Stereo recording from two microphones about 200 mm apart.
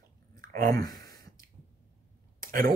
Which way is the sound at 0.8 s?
20° left (ahead or behind).